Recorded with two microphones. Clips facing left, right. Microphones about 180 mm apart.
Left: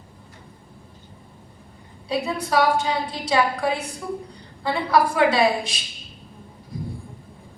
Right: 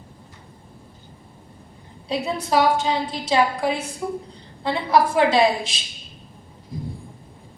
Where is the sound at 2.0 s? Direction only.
25° right (ahead or behind).